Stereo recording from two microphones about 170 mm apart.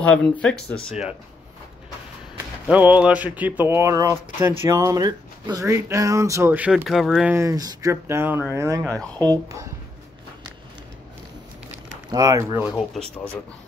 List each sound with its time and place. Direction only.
0.0 s speech: 5° left (ahead or behind)
0.8 s speech: 5° right (ahead or behind)
2.3 s speech: 10° right (ahead or behind)
7.3 s speech: 20° right (ahead or behind)
8.8 s speech: 10° left (ahead or behind)
9.3 s speech: 20° right (ahead or behind)
12.1 s speech: 20° right (ahead or behind)
12.7 s speech: 5° left (ahead or behind)